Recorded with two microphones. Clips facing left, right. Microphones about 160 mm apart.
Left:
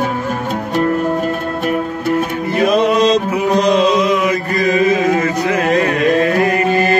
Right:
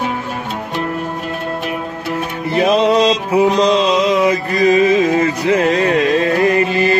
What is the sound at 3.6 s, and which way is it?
Music, 55° left (ahead or behind).